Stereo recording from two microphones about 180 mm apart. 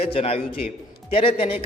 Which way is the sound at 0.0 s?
30° left (ahead or behind).